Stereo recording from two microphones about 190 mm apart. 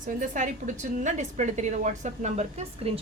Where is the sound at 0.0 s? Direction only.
45° right (ahead or behind).